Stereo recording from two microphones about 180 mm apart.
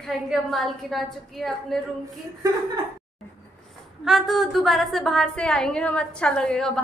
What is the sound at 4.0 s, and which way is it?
A woman's voice, centre (ahead or behind).